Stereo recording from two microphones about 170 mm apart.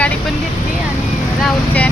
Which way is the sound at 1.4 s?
10° left (ahead or behind).